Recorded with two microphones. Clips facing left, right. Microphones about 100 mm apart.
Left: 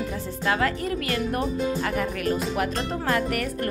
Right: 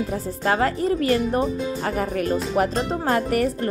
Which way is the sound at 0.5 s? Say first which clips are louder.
Right 4 dB; 35° right (ahead or behind).